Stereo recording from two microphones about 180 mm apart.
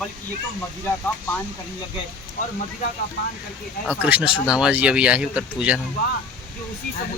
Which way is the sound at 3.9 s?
5° right (ahead or behind).